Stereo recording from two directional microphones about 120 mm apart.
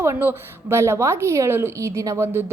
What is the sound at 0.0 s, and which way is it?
A woman's voice, 20° right (ahead or behind).